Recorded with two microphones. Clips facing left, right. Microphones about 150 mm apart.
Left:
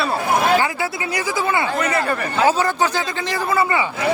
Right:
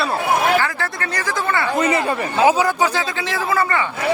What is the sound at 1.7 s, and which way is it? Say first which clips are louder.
Speech: right 2 dB; 20° right (ahead or behind).